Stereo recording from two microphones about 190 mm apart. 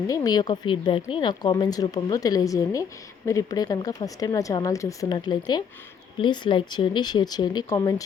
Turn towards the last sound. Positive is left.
turn(degrees=20)  # may be behind; listen again after turning